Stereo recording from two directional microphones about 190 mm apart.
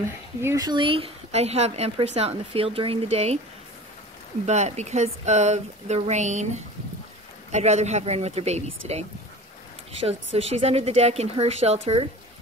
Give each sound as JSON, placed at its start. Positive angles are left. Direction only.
{"t": 0.0, "sound": "speech", "side_deg": -15}
{"t": 4.5, "sound": "speech", "side_deg": -35}